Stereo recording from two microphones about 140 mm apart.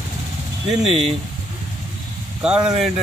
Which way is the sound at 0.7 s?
Centre (ahead or behind).